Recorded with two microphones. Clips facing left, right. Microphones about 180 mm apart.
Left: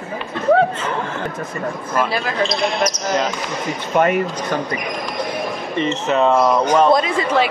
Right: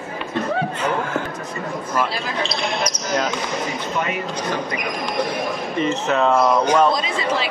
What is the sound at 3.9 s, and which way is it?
Speech, 60° left (ahead or behind).